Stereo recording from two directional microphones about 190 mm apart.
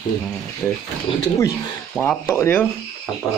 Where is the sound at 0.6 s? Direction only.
Centre (ahead or behind).